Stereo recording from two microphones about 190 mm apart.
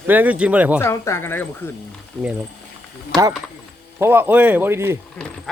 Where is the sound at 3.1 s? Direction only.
20° right (ahead or behind).